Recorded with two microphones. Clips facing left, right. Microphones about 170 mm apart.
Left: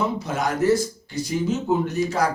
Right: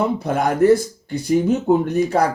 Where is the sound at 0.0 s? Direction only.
55° right (ahead or behind).